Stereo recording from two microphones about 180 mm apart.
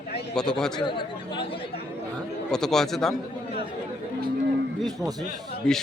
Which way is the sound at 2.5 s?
5° left (ahead or behind).